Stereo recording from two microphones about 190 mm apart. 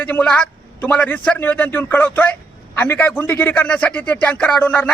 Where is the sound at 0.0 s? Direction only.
10° left (ahead or behind).